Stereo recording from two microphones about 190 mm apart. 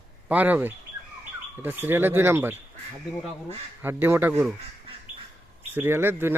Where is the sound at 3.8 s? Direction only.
10° right (ahead or behind).